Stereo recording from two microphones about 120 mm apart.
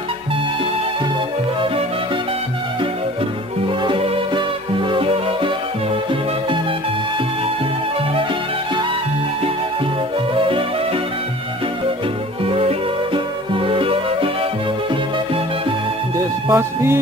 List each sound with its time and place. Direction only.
3.8 s music: 45° right (ahead or behind)
12.4 s music: 55° right (ahead or behind)
16.5 s music: 20° right (ahead or behind)